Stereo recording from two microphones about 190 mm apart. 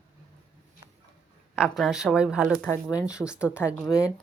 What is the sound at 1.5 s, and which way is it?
A woman's voice, centre (ahead or behind).